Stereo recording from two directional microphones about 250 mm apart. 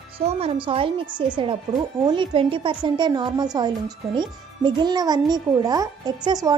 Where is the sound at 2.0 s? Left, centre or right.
Centre.